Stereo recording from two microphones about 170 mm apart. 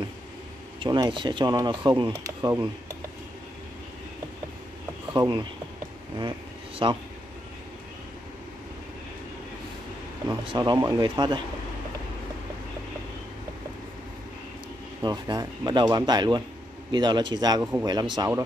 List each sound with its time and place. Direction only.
0.7 s speech: 25° right (ahead or behind)
5.1 s speech: 25° right (ahead or behind)
6.8 s speech: 25° right (ahead or behind)
10.2 s speech: 30° right (ahead or behind)
15.0 s speech: 25° right (ahead or behind)